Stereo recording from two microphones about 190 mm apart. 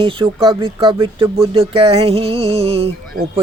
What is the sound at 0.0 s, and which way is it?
Speech, 25° right (ahead or behind).